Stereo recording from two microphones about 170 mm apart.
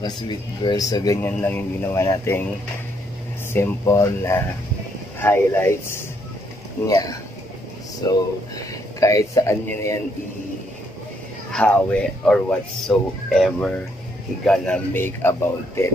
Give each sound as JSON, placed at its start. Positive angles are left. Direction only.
{"t": 0.0, "sound": "speech", "side_deg": 25}
{"t": 3.5, "sound": "speech", "side_deg": 15}
{"t": 11.5, "sound": "speech", "side_deg": 5}